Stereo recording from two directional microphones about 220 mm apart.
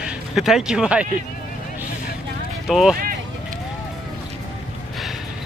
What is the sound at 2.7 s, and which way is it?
Speech, centre (ahead or behind).